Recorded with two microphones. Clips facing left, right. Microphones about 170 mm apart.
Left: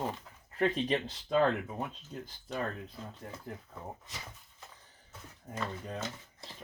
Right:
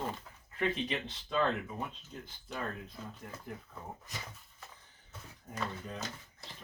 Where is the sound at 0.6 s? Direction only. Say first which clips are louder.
Left 4 dB; 40° left (ahead or behind).